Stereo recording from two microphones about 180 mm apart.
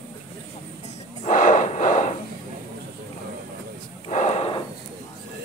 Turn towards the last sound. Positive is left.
turn(degrees=35)  # may be behind; listen again after turning